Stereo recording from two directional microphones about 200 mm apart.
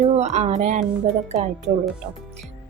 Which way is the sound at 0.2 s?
35° right (ahead or behind).